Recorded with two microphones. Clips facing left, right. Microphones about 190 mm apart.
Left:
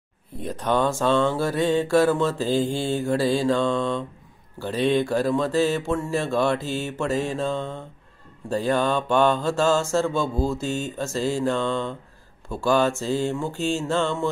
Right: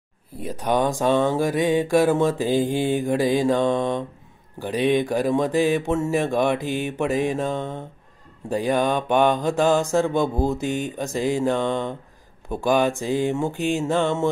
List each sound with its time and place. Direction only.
0.4 s mantra: 10° right (ahead or behind)